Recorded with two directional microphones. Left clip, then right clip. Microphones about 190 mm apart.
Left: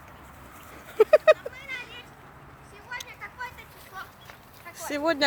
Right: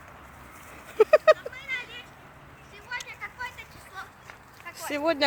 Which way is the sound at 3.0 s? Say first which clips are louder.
Right 1 dB; 50° right (ahead or behind).